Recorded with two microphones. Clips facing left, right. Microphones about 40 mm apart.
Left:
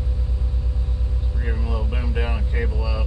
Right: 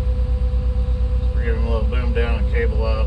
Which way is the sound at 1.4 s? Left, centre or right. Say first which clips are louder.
Right 5 dB; right.